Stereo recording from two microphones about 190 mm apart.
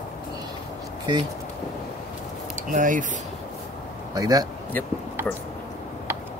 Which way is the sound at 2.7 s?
45° right (ahead or behind).